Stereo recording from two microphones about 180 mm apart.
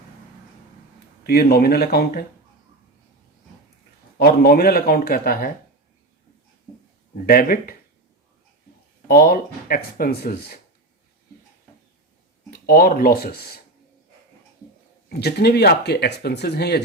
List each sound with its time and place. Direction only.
1.3 s speech: 60° left (ahead or behind)
4.2 s speech: 60° left (ahead or behind)
7.3 s speech: 55° left (ahead or behind)
9.0 s speech: 55° left (ahead or behind)
12.5 s speech: 55° left (ahead or behind)
15.2 s speech: 65° left (ahead or behind)